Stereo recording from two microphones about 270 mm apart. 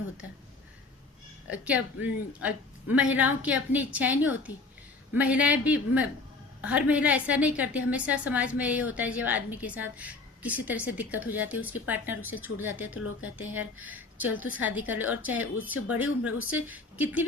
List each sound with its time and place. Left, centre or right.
1.5 s a woman's voice: centre
12.9 s a woman's voice: left
13.8 s a woman's voice: centre